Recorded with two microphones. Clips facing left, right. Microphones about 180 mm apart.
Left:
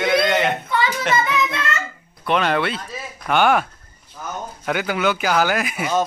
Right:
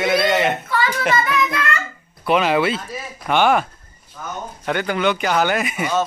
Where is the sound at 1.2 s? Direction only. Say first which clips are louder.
Right 1 dB; 25° left (ahead or behind).